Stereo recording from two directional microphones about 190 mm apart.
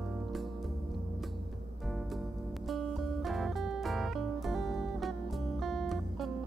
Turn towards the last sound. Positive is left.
turn(degrees=0)  # may be behind; listen again after turning